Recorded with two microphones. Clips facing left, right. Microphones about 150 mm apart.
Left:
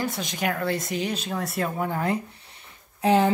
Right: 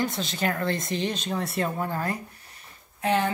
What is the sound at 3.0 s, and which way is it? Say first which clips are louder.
Speech: left 4 dB; 30° left (ahead or behind).